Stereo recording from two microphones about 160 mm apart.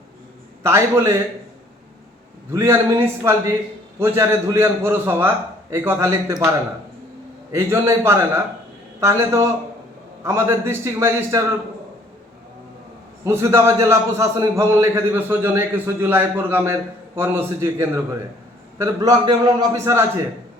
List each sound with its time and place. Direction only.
0.6 s a man's voice: 15° right (ahead or behind)
2.5 s a man's voice: 15° right (ahead or behind)
7.5 s a man's voice: 15° right (ahead or behind)
13.2 s a man's voice: 15° right (ahead or behind)